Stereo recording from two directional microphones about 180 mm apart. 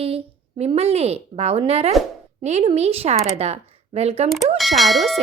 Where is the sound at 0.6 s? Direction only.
35° right (ahead or behind).